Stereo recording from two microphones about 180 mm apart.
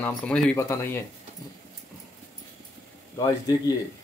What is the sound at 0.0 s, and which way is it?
Speech, 5° left (ahead or behind).